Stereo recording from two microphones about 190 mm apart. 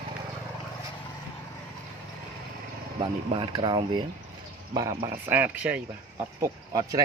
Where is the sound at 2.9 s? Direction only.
25° right (ahead or behind).